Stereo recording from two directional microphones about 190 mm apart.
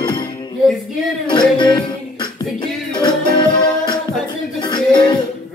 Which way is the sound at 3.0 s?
25° left (ahead or behind).